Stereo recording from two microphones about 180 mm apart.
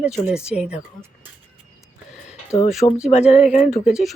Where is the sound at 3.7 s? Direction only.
Centre (ahead or behind).